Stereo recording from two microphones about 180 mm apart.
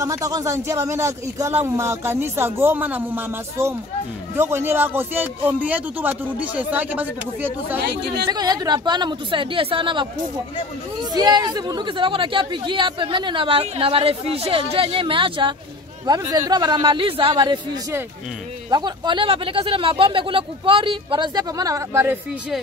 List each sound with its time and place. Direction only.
0.0 s a man's voice: 20° right (ahead or behind)
8.3 s a woman's voice: 20° right (ahead or behind)
18.7 s a woman's voice: 25° right (ahead or behind)